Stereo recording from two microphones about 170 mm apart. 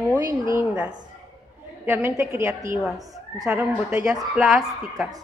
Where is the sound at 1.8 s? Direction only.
15° right (ahead or behind).